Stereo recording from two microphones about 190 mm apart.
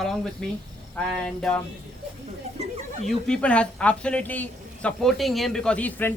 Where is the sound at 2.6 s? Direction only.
35° right (ahead or behind).